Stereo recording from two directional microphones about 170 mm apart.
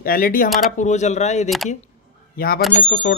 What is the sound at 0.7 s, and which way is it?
Speech, 45° left (ahead or behind).